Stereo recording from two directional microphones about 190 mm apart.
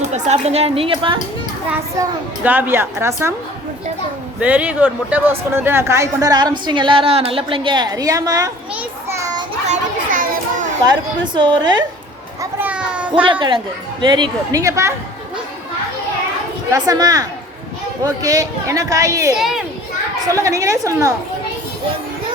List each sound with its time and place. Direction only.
0.1 s a woman's voice: 35° right (ahead or behind)
1.7 s a child's voice: 10° right (ahead or behind)
4.4 s speech: 10° right (ahead or behind)
8.7 s a sound: 15° right (ahead or behind)
9.6 s children playing: 45° right (ahead or behind)
10.8 s speech: 25° right (ahead or behind)
12.4 s a sound: 10° right (ahead or behind)
14.0 s a child's voice: 20° right (ahead or behind)
16.7 s a child's voice: 20° right (ahead or behind)
19.4 s a child's voice: centre (ahead or behind)
20.2 s a child's voice: 15° right (ahead or behind)